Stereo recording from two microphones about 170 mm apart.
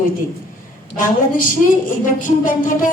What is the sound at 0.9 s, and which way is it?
Music, 55° left (ahead or behind).